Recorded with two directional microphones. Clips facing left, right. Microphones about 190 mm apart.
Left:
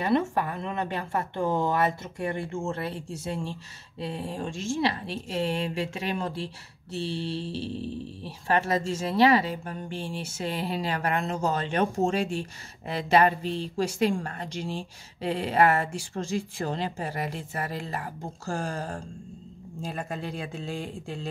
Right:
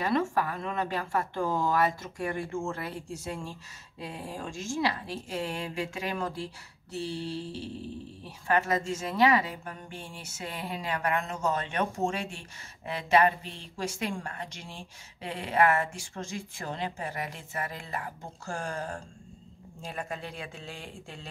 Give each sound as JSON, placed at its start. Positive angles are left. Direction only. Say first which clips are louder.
{"t": 0.0, "sound": "a woman's voice", "louder": "left 3 dB", "side_deg": 25}